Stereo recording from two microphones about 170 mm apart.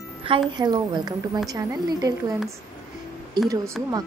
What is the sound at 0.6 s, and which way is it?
Speech, 25° right (ahead or behind).